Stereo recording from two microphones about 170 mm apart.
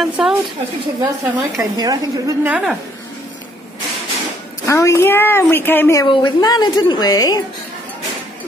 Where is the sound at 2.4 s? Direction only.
5° right (ahead or behind).